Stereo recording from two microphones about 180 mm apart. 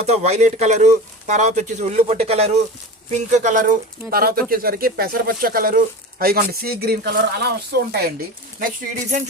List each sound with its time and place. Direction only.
0.0 s speech: 35° right (ahead or behind)
4.1 s speech: 55° right (ahead or behind)
8.5 s speech: 45° right (ahead or behind)